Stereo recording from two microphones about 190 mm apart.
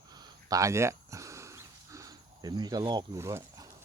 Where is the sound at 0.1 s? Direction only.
20° right (ahead or behind).